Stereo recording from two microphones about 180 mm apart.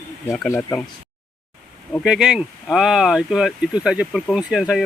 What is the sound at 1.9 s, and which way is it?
Speech, centre (ahead or behind).